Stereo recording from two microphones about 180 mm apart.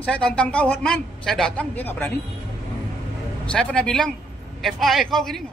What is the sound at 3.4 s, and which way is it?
Speech, 5° left (ahead or behind).